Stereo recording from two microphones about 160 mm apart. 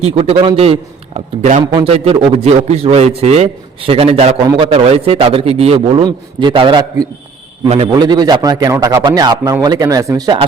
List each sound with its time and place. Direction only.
0.0 s a man's voice: 40° right (ahead or behind)
4.4 s a man's voice: 30° right (ahead or behind)
6.0 s a man's voice: 30° right (ahead or behind)